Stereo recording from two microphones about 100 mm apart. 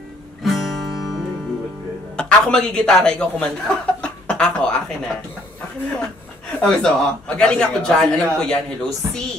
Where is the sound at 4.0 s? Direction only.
10° left (ahead or behind).